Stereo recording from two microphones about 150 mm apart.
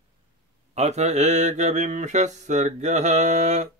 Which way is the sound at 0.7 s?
45° right (ahead or behind).